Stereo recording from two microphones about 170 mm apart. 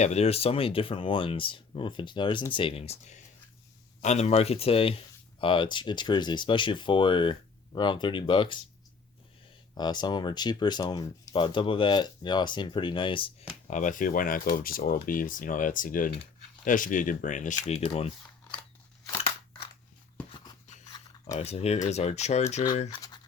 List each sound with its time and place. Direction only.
0.0 s speech: 40° left (ahead or behind)
9.7 s speech: 25° left (ahead or behind)
13.7 s speech: 50° left (ahead or behind)
19.1 s scissors: 30° left (ahead or behind)
20.3 s a sound: 25° left (ahead or behind)
21.2 s speech: 40° left (ahead or behind)
22.9 s scratch: 25° left (ahead or behind)